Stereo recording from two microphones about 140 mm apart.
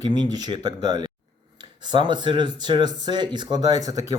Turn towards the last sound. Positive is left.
turn(degrees=-25)  # may be behind; listen again after turning